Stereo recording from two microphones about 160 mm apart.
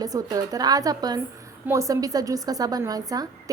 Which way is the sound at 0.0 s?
20° right (ahead or behind).